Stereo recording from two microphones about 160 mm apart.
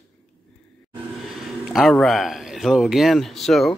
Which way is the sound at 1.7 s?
Centre (ahead or behind).